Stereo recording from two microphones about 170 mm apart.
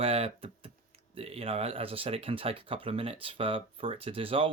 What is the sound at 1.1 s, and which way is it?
Speech, 35° right (ahead or behind).